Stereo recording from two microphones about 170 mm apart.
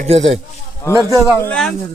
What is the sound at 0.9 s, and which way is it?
Speech, 20° right (ahead or behind).